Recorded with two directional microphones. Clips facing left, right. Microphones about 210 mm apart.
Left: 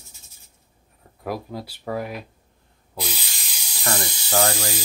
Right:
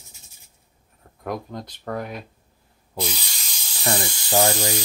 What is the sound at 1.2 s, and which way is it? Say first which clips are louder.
Speech: even; 5° left (ahead or behind).